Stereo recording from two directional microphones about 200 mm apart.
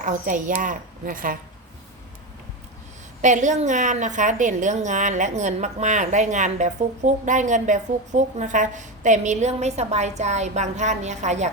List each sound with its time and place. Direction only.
0.0 s a woman's voice: 40° right (ahead or behind)
3.2 s a woman's voice: 35° right (ahead or behind)